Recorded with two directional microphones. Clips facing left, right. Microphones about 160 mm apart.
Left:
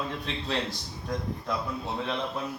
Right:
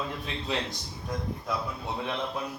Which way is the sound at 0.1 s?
Centre (ahead or behind).